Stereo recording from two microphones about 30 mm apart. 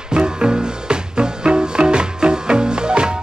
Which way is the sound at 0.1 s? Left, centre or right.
Right.